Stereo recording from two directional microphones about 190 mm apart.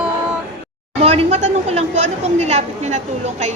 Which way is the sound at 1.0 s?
35° right (ahead or behind).